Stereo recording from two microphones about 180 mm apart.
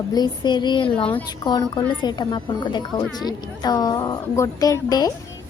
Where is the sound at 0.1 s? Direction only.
25° left (ahead or behind).